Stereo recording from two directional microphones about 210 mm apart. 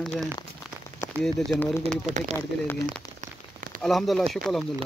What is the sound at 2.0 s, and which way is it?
Speech, 35° right (ahead or behind).